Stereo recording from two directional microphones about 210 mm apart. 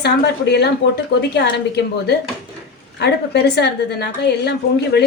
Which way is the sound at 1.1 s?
50° left (ahead or behind).